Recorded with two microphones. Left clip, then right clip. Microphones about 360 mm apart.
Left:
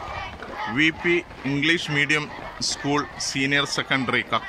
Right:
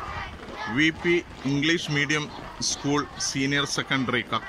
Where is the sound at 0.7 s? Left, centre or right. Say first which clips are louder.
Left 2 dB; centre.